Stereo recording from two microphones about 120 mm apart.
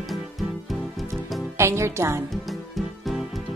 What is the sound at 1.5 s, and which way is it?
Speech, 25° right (ahead or behind).